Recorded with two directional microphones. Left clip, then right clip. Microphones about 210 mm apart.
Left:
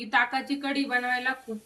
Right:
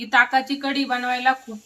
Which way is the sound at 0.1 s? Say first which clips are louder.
Right 8 dB; 20° right (ahead or behind).